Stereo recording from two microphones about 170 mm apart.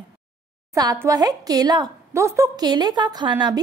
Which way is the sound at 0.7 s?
20° right (ahead or behind).